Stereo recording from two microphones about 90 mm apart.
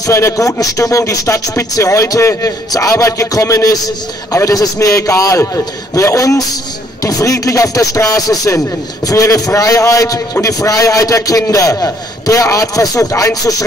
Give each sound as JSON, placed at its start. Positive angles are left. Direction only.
{"t": 0.0, "sound": "a man's voice", "side_deg": 35}